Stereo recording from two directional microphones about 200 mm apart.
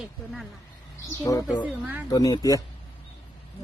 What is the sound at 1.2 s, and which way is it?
Speech, 15° left (ahead or behind).